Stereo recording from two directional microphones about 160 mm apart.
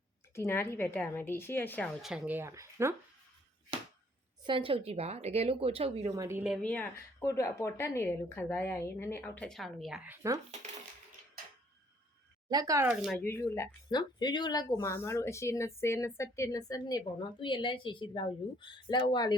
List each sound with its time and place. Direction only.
0.3 s speech: 15° left (ahead or behind); by 2.9 s 15° right (ahead or behind)
4.4 s speech: 35° right (ahead or behind)
6.1 s speech: 20° right (ahead or behind)
6.6 s speech: 10° left (ahead or behind)
12.5 s speech: 20° right (ahead or behind)
12.9 s speech: 5° right (ahead or behind)
13.1 s speech: 15° left (ahead or behind)